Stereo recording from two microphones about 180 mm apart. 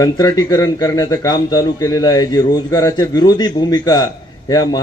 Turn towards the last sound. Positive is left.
turn(degrees=20)  # may be behind; listen again after turning